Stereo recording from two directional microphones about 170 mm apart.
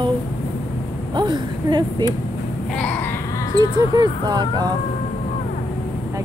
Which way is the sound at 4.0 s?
25° right (ahead or behind).